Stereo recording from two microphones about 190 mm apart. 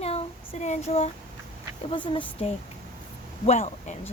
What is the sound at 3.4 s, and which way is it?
Speech, 35° left (ahead or behind).